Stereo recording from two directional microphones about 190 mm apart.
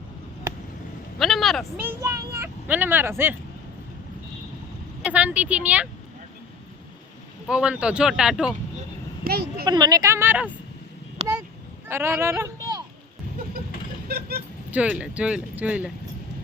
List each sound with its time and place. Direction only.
1.2 s a sound: centre (ahead or behind)
1.7 s speech: 10° right (ahead or behind)
5.0 s speech: 5° right (ahead or behind)
7.4 s speech: 5° right (ahead or behind)
9.2 s speech: 55° right (ahead or behind)
9.6 s speech: 20° right (ahead or behind)
11.2 s a sound: 35° right (ahead or behind)
11.9 s speech: 10° right (ahead or behind)
14.1 s vehicle: 55° right (ahead or behind)
14.7 s speech: 5° right (ahead or behind)